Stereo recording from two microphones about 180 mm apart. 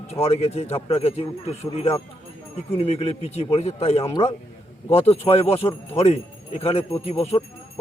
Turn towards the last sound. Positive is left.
turn(degrees=35)  # may be behind; listen again after turning